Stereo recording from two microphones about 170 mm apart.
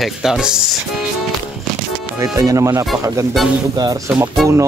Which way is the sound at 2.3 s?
20° right (ahead or behind).